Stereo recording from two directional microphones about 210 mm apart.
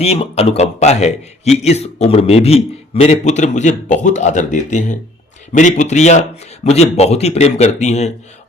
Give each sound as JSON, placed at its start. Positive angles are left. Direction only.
{"t": 0.0, "sound": "a man's voice", "side_deg": 30}